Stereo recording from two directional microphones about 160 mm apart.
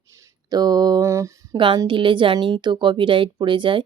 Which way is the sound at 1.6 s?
30° right (ahead or behind).